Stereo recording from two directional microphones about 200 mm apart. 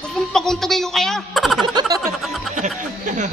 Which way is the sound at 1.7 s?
20° right (ahead or behind).